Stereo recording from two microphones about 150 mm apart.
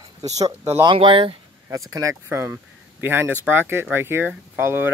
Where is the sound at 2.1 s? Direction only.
15° right (ahead or behind).